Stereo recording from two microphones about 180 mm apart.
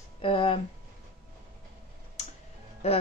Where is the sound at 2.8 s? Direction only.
35° left (ahead or behind).